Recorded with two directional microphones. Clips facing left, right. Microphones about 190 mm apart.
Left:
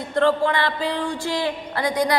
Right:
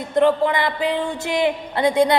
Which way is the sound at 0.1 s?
15° right (ahead or behind).